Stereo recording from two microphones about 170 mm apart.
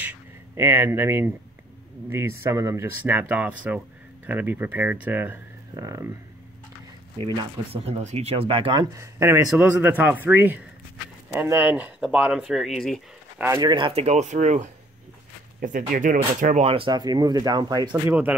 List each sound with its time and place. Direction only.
0.0 s a sound: 10° right (ahead or behind)
2.0 s speech: 15° right (ahead or behind)
7.2 s speech: 30° right (ahead or behind)
8.9 s speech: 15° right (ahead or behind); by 13.0 s centre (ahead or behind)
13.4 s speech: 20° right (ahead or behind)